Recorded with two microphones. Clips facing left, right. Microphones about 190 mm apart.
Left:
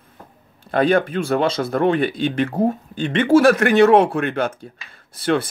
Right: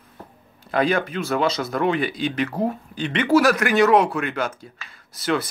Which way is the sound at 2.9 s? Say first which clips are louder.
Left 4 dB; 50° left (ahead or behind).